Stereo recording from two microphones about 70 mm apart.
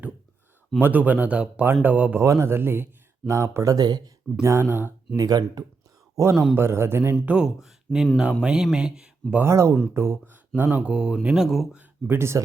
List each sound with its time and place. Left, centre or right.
0.8 s speech: right
1.6 s speech: right
2.2 s speech: right
4.4 s a man's voice: right
5.1 s speech: right
6.2 s speech: right
6.6 s a man's voice: right
7.3 s speech: centre
7.9 s speech: centre
8.2 s speech: centre
9.4 s a man's voice: right; by 11.4 s centre
11.4 s speech: centre
12.0 s a man's voice: right